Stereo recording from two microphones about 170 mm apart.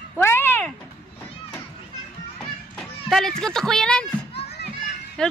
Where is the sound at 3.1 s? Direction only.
Centre (ahead or behind).